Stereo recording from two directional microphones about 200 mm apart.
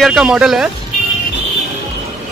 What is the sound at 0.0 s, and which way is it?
Speech, centre (ahead or behind).